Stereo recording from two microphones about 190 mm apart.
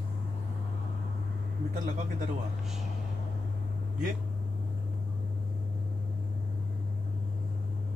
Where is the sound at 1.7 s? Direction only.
40° right (ahead or behind).